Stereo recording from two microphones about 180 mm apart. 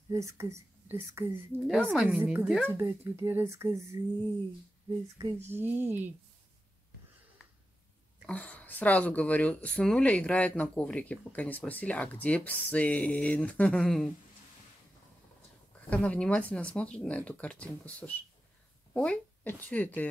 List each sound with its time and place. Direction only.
0.1 s speech: 15° right (ahead or behind)
1.6 s speech: centre (ahead or behind)
5.4 s speech: 10° right (ahead or behind)
8.3 s speech: 5° left (ahead or behind)
15.9 s speech: 5° left (ahead or behind)